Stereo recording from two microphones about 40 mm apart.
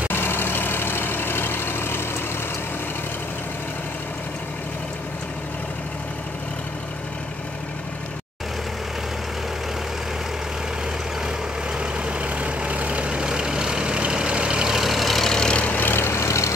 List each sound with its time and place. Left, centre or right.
0.1 s vehicle: left
11.8 s vehicle: right
14.8 s vehicle: centre
15.2 s vehicle: centre
15.5 s vehicle: left
15.8 s vehicle: left